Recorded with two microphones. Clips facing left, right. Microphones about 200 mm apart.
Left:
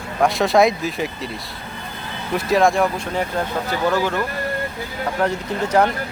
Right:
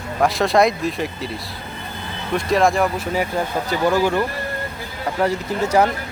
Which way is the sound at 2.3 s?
Centre (ahead or behind).